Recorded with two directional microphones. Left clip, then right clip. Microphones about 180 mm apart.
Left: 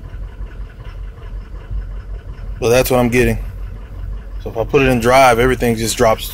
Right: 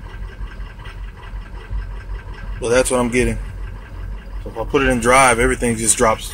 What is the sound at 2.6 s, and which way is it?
Speech, 25° left (ahead or behind).